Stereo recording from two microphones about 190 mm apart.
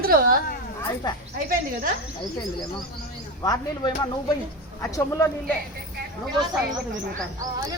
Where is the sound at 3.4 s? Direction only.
20° left (ahead or behind).